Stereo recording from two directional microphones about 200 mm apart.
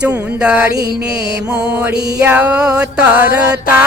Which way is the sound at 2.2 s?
5° right (ahead or behind).